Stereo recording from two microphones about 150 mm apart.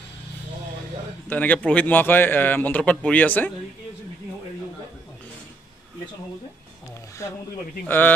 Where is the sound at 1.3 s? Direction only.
10° left (ahead or behind).